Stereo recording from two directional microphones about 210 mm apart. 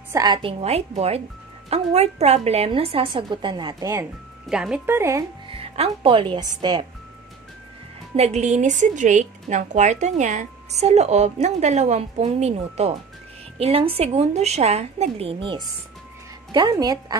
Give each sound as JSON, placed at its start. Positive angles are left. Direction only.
{"t": 0.1, "sound": "a woman's voice", "side_deg": -20}
{"t": 4.5, "sound": "a woman's voice", "side_deg": -5}
{"t": 5.5, "sound": "a woman's voice", "side_deg": -25}
{"t": 8.2, "sound": "a woman's voice", "side_deg": -30}